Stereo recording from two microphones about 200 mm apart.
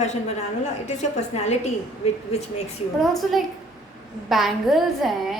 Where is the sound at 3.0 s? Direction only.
Centre (ahead or behind).